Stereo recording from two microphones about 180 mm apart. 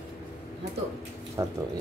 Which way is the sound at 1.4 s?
20° right (ahead or behind).